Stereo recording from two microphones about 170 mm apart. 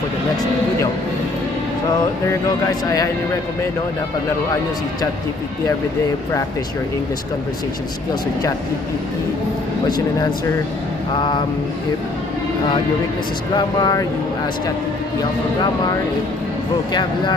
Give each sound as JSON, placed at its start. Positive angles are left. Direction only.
{"t": 2.4, "sound": "speech", "side_deg": 20}
{"t": 9.8, "sound": "speech", "side_deg": 25}
{"t": 13.6, "sound": "speech", "side_deg": 25}